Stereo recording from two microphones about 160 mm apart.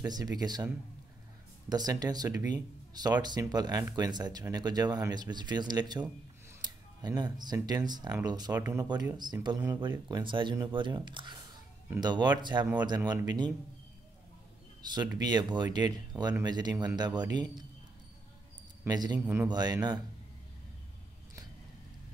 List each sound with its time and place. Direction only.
0.0 s speech: 25° right (ahead or behind)
1.7 s speech: 25° right (ahead or behind)
8.8 s speech: 25° right (ahead or behind)
14.8 s speech: 25° right (ahead or behind)
18.9 s speech: 25° right (ahead or behind)
19.1 s speech: 10° right (ahead or behind)
19.5 s speech: 25° right (ahead or behind)